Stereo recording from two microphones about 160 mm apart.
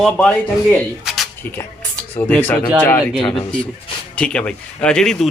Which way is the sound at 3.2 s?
30° left (ahead or behind).